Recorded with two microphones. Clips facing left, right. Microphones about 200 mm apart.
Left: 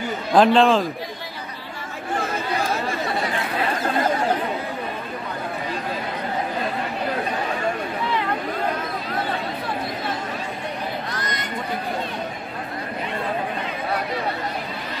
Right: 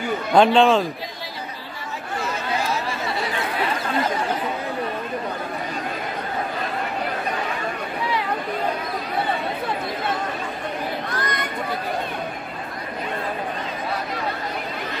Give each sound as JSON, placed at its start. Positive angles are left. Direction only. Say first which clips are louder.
{"t": 0.3, "sound": "a man's voice", "louder": "even", "side_deg": 0}
{"t": 2.7, "sound": "chatter", "louder": "left 1 dB", "side_deg": 50}
{"t": 11.1, "sound": "chatter", "louder": "right 2 dB", "side_deg": -60}